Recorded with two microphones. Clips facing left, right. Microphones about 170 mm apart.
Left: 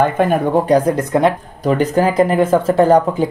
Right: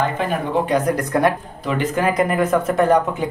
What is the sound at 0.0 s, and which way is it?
Speech, 50° left (ahead or behind).